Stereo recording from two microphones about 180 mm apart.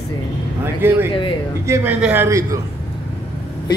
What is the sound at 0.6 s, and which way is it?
A man's voice, 10° right (ahead or behind).